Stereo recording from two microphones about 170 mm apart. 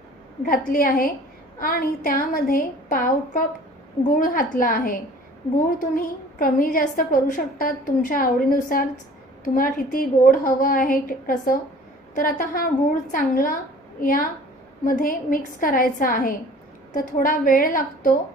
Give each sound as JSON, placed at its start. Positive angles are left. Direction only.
{"t": 0.5, "sound": "a woman's voice", "side_deg": 55}